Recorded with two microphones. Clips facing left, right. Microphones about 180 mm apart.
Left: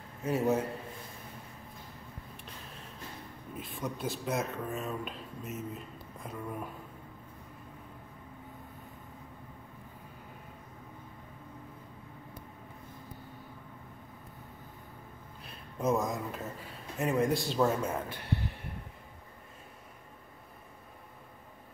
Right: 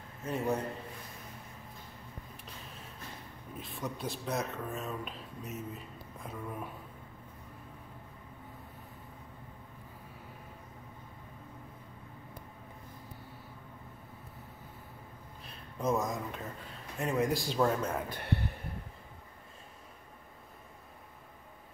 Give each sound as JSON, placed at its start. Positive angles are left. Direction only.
{"t": 0.2, "sound": "speech", "side_deg": 5}
{"t": 3.5, "sound": "speech", "side_deg": 0}
{"t": 15.4, "sound": "speech", "side_deg": 0}
{"t": 18.1, "sound": "speech", "side_deg": -60}